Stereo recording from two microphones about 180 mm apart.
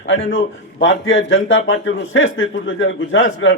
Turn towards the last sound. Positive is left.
turn(degrees=90)